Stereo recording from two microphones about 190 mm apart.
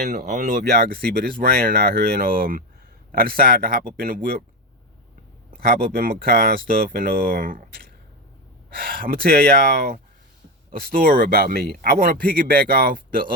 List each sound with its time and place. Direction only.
0.1 s speech: 45° right (ahead or behind)
0.6 s speech: 55° right (ahead or behind)
5.5 s speech: 50° right (ahead or behind)